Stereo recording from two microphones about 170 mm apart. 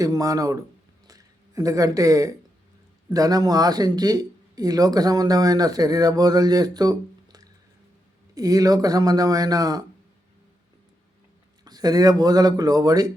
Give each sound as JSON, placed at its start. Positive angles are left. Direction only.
{"t": 0.0, "sound": "speech", "side_deg": -20}
{"t": 1.0, "sound": "a sound", "side_deg": -20}
{"t": 3.1, "sound": "speech", "side_deg": -20}
{"t": 8.4, "sound": "speech", "side_deg": -20}
{"t": 11.6, "sound": "speech", "side_deg": -20}